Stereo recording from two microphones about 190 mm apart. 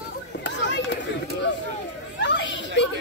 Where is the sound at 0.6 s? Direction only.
65° left (ahead or behind).